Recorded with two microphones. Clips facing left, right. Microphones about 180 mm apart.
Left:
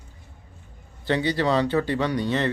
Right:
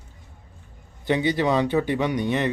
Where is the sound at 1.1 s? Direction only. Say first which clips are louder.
Right 1 dB; 20° right (ahead or behind).